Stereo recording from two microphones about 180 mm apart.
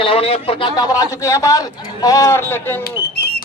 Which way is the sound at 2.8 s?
55° left (ahead or behind).